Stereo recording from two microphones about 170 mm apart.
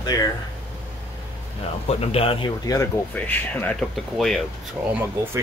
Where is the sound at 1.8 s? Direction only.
35° left (ahead or behind).